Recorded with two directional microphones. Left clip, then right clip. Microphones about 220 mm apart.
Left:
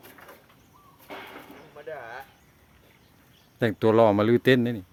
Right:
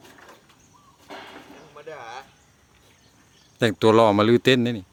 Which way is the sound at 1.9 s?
50° right (ahead or behind).